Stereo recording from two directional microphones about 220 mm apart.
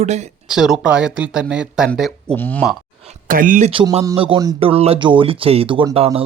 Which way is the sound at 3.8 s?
15° right (ahead or behind).